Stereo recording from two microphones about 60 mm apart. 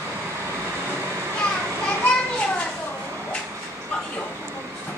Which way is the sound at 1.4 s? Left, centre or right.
Centre.